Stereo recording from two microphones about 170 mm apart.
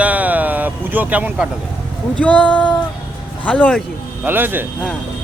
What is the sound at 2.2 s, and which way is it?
Speech, 10° left (ahead or behind).